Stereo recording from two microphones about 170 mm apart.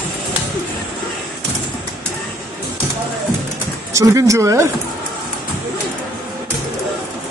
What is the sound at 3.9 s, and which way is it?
Speech, 20° right (ahead or behind).